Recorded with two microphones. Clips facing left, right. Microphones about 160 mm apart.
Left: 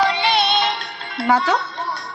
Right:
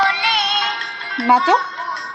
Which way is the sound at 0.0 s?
25° left (ahead or behind).